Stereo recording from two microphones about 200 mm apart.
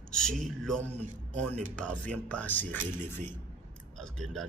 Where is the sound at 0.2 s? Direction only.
Centre (ahead or behind).